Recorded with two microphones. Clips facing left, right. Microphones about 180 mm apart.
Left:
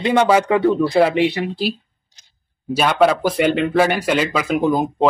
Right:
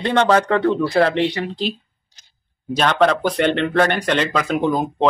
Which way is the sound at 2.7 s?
10° left (ahead or behind).